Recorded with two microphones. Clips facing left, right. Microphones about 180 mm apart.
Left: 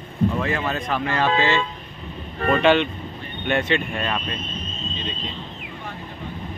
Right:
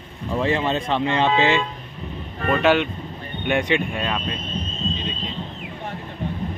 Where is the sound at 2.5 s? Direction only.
5° right (ahead or behind).